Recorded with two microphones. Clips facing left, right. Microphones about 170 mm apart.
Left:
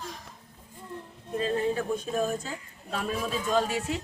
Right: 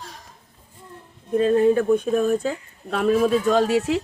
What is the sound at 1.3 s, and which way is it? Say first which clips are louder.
Speech: right 10 dB; 55° right (ahead or behind).